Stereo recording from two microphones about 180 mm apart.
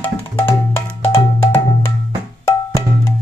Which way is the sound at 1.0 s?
30° left (ahead or behind).